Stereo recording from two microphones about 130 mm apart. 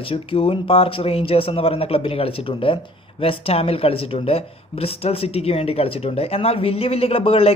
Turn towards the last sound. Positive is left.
turn(degrees=45)  # may be behind; listen again after turning